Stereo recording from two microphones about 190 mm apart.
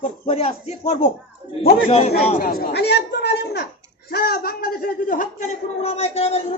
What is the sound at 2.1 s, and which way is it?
A man's voice, 50° left (ahead or behind).